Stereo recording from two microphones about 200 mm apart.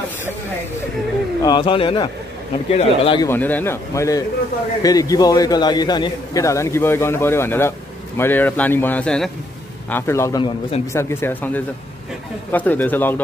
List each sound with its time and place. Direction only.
1.4 s speech: 25° left (ahead or behind)
3.3 s a man's voice: 10° left (ahead or behind)